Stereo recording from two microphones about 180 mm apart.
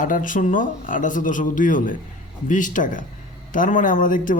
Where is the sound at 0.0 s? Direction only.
45° left (ahead or behind).